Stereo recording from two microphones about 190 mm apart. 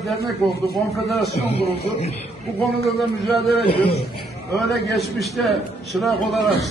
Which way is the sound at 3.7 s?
30° left (ahead or behind).